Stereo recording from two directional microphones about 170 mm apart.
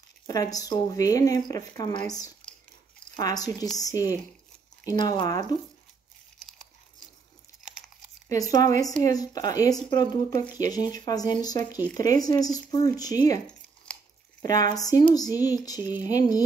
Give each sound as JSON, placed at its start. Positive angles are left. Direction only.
{"t": 0.3, "sound": "speech", "side_deg": 20}
{"t": 8.3, "sound": "speech", "side_deg": 20}
{"t": 14.4, "sound": "speech", "side_deg": 20}